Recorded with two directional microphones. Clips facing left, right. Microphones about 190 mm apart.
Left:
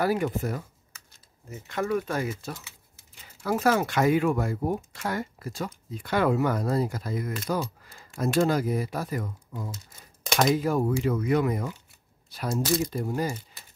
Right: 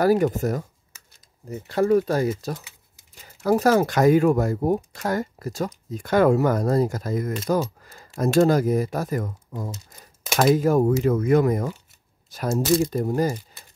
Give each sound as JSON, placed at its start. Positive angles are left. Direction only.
{"t": 0.0, "sound": "speech", "side_deg": -40}